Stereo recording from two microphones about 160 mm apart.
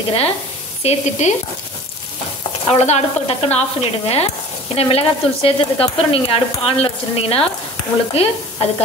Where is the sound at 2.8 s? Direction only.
40° left (ahead or behind).